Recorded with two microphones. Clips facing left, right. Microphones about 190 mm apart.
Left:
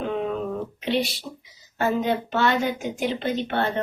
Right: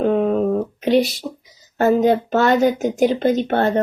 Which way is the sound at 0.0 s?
45° right (ahead or behind).